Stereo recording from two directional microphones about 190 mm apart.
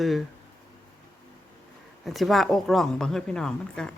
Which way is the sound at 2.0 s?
Centre (ahead or behind).